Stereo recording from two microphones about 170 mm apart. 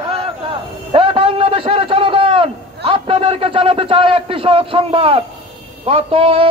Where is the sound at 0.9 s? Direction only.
30° right (ahead or behind).